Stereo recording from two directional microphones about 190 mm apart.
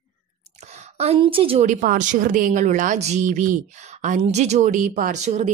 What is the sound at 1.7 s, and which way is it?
Speech, 45° right (ahead or behind).